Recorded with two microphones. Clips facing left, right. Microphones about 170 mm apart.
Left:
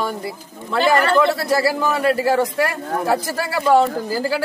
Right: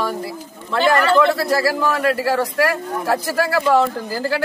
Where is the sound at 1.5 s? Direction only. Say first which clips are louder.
Even; centre (ahead or behind).